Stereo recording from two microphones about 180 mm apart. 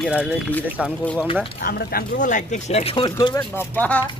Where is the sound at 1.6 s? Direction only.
55° left (ahead or behind); by 3.4 s 25° left (ahead or behind).